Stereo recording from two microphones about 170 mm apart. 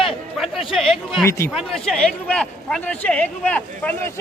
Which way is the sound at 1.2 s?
15° left (ahead or behind).